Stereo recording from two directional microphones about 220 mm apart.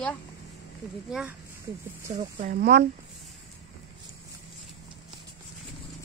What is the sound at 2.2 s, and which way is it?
Speech, 40° right (ahead or behind).